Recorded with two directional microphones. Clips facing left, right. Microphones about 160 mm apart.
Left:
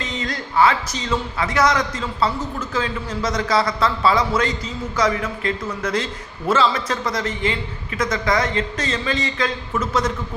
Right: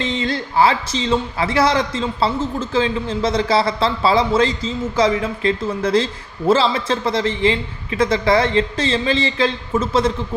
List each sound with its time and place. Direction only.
0.0 s a man's voice: 30° right (ahead or behind)